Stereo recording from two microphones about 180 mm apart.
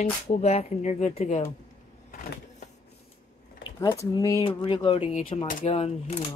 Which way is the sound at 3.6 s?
20° left (ahead or behind).